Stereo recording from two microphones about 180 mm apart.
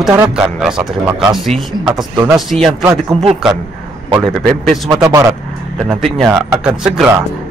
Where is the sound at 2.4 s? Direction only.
Centre (ahead or behind).